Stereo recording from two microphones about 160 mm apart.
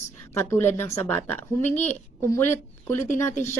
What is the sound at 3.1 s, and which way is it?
Speech, 45° left (ahead or behind).